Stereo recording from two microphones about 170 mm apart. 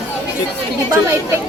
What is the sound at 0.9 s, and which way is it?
Speech, 15° right (ahead or behind).